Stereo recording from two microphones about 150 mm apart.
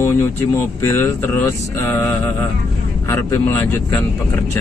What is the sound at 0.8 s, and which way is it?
Speech, 15° left (ahead or behind).